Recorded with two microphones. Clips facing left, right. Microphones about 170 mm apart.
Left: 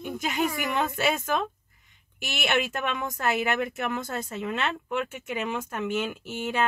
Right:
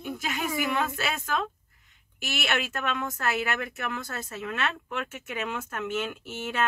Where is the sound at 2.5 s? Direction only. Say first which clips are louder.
Left 4 dB; 15° left (ahead or behind).